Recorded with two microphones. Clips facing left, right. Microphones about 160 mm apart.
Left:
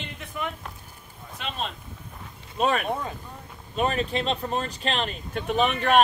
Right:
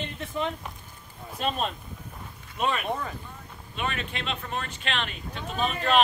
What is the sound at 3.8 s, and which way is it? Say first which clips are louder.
Speech: left 7 dB; 35° left (ahead or behind).